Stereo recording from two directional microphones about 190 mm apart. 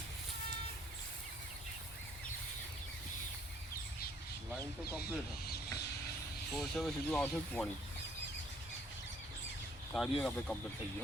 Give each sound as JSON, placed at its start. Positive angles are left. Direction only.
{"t": 4.9, "sound": "speech", "side_deg": -10}
{"t": 5.5, "sound": "hiss", "side_deg": 55}
{"t": 6.5, "sound": "speech", "side_deg": 0}
{"t": 9.9, "sound": "speech", "side_deg": 0}